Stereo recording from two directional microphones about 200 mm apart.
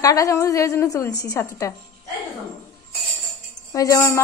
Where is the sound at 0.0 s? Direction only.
15° left (ahead or behind).